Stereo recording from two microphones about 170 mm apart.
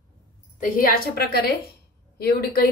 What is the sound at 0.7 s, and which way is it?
A woman's voice, 60° left (ahead or behind).